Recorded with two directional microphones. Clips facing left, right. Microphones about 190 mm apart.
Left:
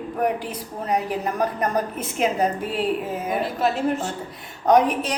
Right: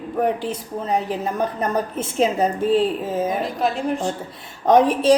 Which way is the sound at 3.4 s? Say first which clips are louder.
Even; 5° left (ahead or behind).